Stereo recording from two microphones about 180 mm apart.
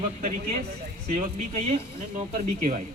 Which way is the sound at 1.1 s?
40° right (ahead or behind).